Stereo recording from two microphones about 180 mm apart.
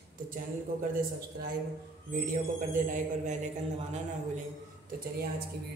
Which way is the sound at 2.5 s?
45° right (ahead or behind).